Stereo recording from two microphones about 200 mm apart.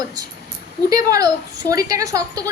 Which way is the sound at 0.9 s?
20° right (ahead or behind).